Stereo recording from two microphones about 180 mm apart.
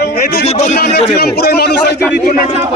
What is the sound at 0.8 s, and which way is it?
A man's voice, 65° left (ahead or behind).